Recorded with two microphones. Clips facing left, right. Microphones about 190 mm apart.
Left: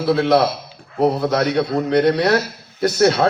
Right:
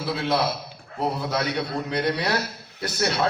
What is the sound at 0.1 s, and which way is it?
A man's voice, 60° left (ahead or behind).